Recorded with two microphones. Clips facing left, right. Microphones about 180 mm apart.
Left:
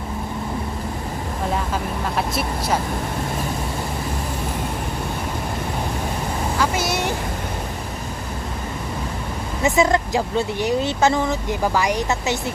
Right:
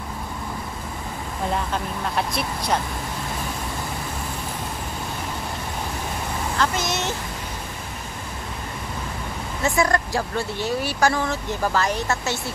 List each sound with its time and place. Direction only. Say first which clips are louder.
1.5 s speech: left 1 dB; 5° left (ahead or behind)
6.6 s speech: left 2 dB; 10° left (ahead or behind)
9.6 s speech: left 4 dB; 20° left (ahead or behind)